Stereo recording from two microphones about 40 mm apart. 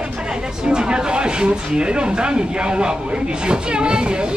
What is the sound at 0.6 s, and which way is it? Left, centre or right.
Speech, right.